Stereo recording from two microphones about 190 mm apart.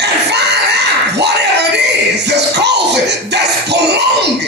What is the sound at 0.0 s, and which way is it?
Screaming, 60° right (ahead or behind).